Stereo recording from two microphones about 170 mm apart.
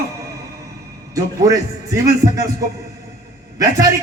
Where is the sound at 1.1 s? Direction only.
20° right (ahead or behind).